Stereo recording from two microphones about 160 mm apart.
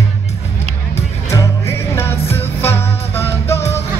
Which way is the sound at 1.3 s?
15° left (ahead or behind).